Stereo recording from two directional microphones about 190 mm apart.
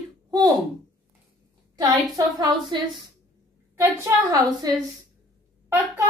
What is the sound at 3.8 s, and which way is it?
Speech, 15° right (ahead or behind).